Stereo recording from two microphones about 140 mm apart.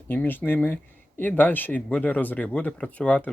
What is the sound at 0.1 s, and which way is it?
Speech, 15° left (ahead or behind).